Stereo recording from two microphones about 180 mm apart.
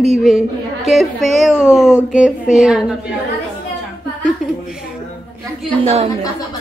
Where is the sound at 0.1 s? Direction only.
Centre (ahead or behind).